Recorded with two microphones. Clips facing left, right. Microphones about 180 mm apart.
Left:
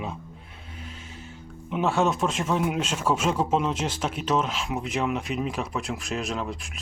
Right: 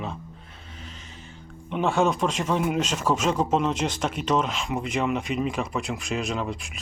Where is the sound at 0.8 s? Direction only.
5° left (ahead or behind).